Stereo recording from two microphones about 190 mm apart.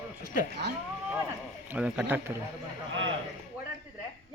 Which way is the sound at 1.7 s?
5° right (ahead or behind).